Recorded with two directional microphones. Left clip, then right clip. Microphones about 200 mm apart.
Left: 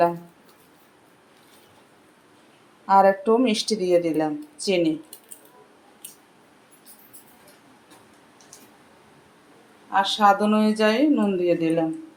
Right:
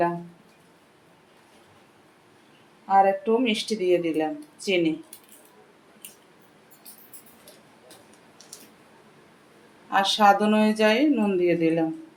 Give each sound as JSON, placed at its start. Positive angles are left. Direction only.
{"t": 2.8, "sound": "speech", "side_deg": 20}
{"t": 9.9, "sound": "speech", "side_deg": -20}